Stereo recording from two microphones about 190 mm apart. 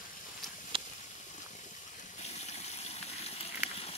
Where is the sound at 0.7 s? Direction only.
25° right (ahead or behind).